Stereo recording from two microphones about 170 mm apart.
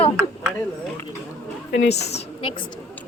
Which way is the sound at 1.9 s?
40° left (ahead or behind).